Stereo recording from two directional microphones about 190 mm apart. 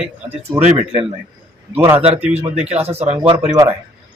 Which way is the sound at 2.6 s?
5° right (ahead or behind).